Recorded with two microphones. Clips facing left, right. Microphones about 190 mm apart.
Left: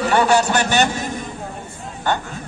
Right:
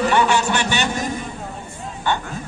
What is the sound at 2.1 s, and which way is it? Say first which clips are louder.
Speech: left 1 dB; 40° left (ahead or behind).